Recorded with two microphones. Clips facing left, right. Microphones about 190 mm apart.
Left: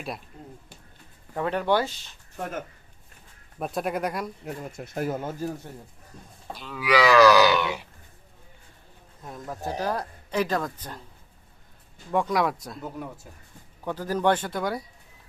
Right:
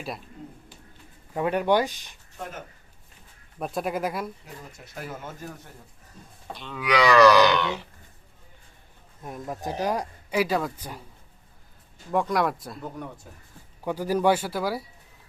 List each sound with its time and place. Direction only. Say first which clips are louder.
1.3 s speech: right 2 dB; 15° right (ahead or behind)
3.6 s speech: even; centre (ahead or behind)
4.4 s speech: left 8 dB; 50° left (ahead or behind)
6.5 s speech: left 2 dB; centre (ahead or behind)
9.2 s speech: right 1 dB; 15° right (ahead or behind)
12.1 s speech: even; centre (ahead or behind)
13.8 s speech: right 2 dB; 10° right (ahead or behind)